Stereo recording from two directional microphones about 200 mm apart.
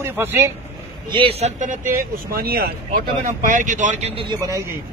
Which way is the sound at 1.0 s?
25° right (ahead or behind).